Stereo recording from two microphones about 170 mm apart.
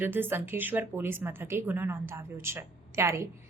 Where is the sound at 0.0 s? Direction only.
10° right (ahead or behind).